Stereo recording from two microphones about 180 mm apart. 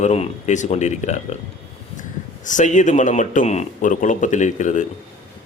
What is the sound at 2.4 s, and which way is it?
Speech, 45° left (ahead or behind).